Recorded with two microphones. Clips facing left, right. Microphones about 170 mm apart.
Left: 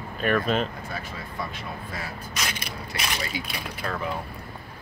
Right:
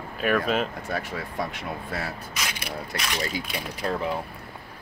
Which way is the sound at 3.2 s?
40° right (ahead or behind).